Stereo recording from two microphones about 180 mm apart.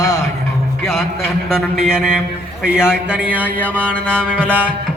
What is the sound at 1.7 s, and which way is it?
Music, 5° right (ahead or behind).